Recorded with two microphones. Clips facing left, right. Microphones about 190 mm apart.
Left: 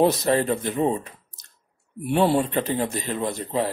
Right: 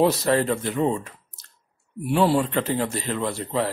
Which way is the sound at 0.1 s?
20° left (ahead or behind).